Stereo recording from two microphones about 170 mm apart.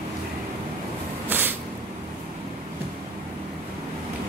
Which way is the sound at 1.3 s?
10° right (ahead or behind).